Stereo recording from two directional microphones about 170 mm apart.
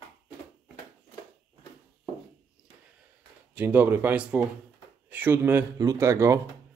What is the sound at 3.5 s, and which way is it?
Speech, 10° right (ahead or behind).